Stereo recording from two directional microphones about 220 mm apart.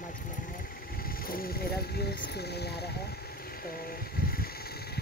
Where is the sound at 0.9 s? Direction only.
40° left (ahead or behind).